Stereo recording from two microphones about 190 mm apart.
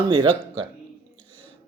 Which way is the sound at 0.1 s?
25° right (ahead or behind).